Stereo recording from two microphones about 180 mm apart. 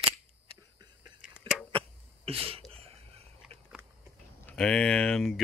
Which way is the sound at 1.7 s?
30° right (ahead or behind).